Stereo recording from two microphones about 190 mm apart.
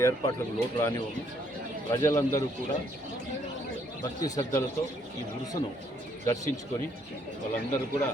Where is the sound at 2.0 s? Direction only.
15° left (ahead or behind).